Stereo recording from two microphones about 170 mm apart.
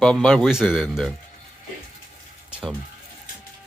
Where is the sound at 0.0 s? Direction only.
5° left (ahead or behind).